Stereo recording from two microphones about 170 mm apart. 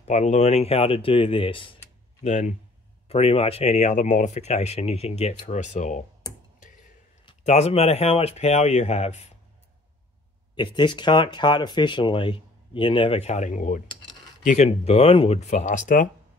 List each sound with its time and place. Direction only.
0.0 s speech: 45° left (ahead or behind)
2.2 s speech: 45° left (ahead or behind)
6.6 s a sound: 55° left (ahead or behind)
7.2 s speech: 40° left (ahead or behind)
10.5 s speech: 25° left (ahead or behind); by 16.1 s 45° left (ahead or behind)